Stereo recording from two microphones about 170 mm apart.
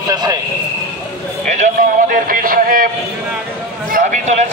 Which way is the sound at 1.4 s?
45° right (ahead or behind).